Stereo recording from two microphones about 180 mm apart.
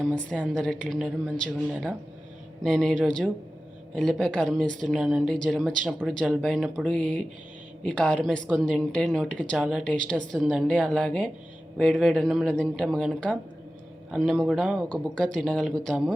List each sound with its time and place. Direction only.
0.0 s a woman's voice: 5° left (ahead or behind)